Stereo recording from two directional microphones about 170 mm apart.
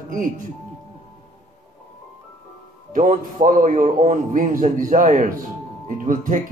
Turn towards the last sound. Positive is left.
turn(degrees=-50)  # may be behind; listen again after turning